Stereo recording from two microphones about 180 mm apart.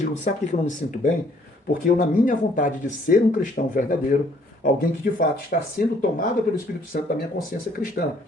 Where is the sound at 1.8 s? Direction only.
50° left (ahead or behind).